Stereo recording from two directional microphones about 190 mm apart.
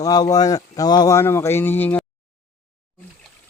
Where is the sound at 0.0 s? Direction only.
20° left (ahead or behind).